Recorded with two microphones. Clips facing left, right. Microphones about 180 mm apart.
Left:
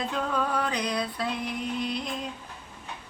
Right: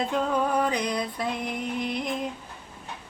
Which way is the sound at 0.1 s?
15° right (ahead or behind).